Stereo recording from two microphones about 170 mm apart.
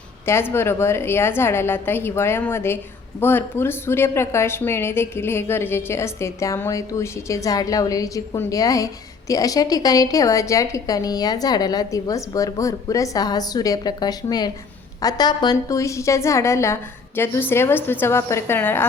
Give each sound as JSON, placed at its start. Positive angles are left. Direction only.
{"t": 0.3, "sound": "a woman's voice", "side_deg": 15}